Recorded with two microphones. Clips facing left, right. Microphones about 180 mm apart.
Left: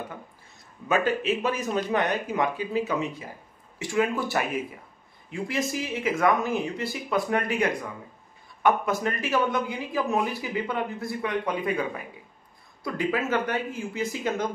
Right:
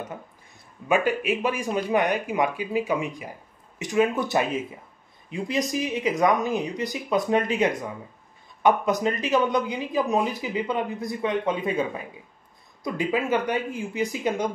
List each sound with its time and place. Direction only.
0.8 s speech: 15° right (ahead or behind)